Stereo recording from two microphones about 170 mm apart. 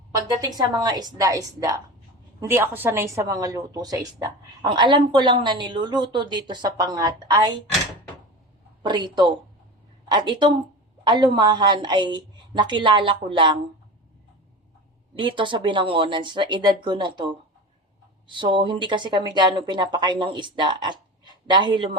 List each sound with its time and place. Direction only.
0.4 s speech: 25° right (ahead or behind)
8.8 s speech: 25° right (ahead or behind)
15.1 s speech: 30° right (ahead or behind)